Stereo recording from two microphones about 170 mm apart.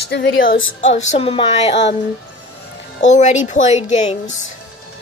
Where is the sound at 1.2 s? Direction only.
35° left (ahead or behind).